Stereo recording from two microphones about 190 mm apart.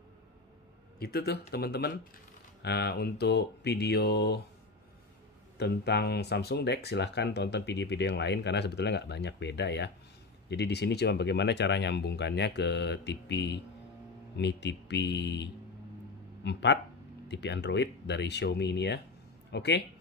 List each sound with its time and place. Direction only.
0.9 s speech: 55° left (ahead or behind)
5.6 s speech: 60° left (ahead or behind)